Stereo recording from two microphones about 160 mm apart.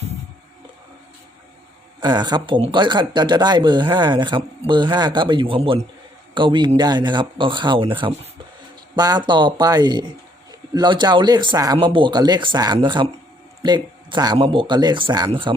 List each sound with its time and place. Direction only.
2.0 s speech: 25° right (ahead or behind)